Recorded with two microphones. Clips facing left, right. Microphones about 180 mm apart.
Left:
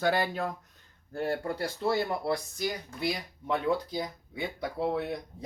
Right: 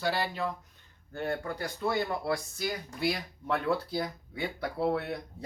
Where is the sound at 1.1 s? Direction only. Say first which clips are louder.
Left 2 dB; 30° left (ahead or behind).